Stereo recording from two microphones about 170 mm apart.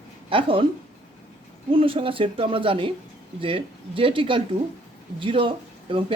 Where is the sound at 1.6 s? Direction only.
30° right (ahead or behind).